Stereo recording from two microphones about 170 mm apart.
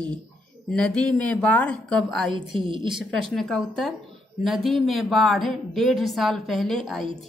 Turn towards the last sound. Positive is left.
turn(degrees=0)  # may be behind; listen again after turning